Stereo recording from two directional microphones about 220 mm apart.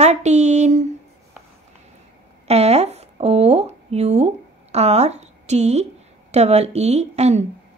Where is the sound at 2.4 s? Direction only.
30° right (ahead or behind).